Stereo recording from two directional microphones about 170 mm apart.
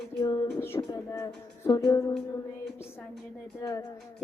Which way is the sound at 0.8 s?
20° left (ahead or behind).